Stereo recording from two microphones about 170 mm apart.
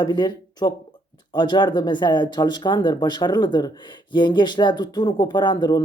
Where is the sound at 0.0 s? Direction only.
25° left (ahead or behind).